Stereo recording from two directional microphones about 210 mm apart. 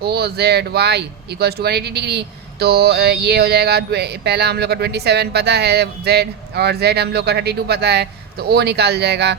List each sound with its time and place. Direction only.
0.0 s speech: 50° right (ahead or behind)